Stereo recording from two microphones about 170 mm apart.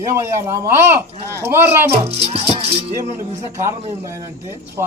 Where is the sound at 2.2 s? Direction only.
35° right (ahead or behind).